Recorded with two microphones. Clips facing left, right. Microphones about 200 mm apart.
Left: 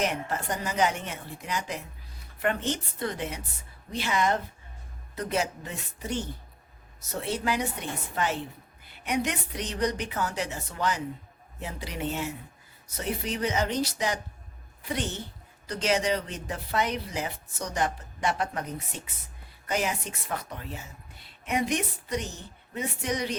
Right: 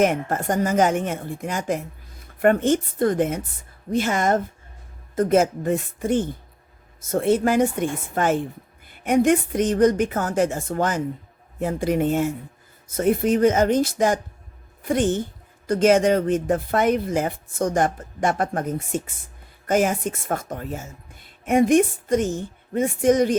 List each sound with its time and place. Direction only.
0.0 s a woman's voice: 50° right (ahead or behind)